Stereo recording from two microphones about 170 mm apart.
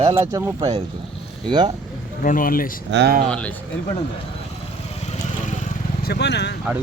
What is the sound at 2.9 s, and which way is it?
Speech, 70° right (ahead or behind).